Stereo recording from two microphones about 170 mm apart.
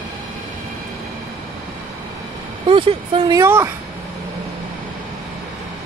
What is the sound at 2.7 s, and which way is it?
Speech, 30° right (ahead or behind).